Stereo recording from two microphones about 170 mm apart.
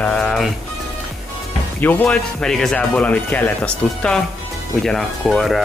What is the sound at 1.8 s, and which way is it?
Speech, 10° left (ahead or behind).